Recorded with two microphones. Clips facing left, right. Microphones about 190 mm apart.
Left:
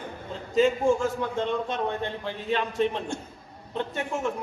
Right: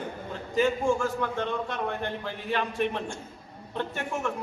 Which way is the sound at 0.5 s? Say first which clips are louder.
Left 3 dB; 20° left (ahead or behind).